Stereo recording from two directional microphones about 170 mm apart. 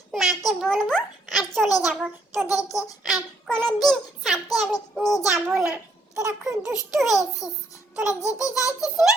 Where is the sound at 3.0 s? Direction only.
Centre (ahead or behind).